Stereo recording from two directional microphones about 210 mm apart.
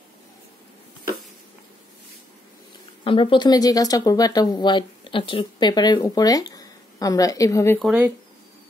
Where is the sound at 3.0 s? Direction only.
25° left (ahead or behind).